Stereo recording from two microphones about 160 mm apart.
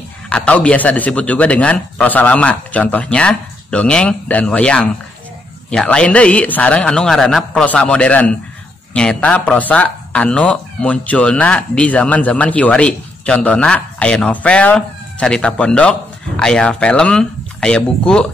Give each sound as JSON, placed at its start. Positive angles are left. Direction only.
{"t": 0.3, "sound": "speech", "side_deg": 10}